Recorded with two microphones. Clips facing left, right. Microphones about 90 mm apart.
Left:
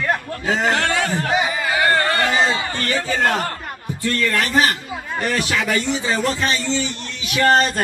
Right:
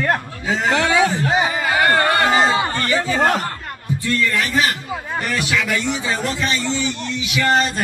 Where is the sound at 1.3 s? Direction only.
25° right (ahead or behind).